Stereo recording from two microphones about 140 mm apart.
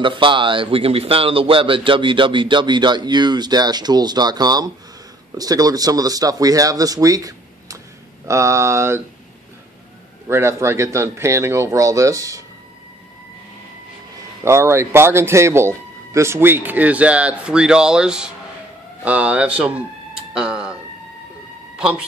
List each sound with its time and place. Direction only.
0.0 s a man's voice: 35° right (ahead or behind); by 9.0 s 20° right (ahead or behind)
10.2 s speech: 20° right (ahead or behind)
14.4 s speech: 15° right (ahead or behind)
20.3 s a sound: 5° right (ahead or behind)
21.7 s speech: 5° right (ahead or behind)